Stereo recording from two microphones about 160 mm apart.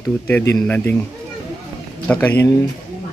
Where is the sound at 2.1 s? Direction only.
10° left (ahead or behind).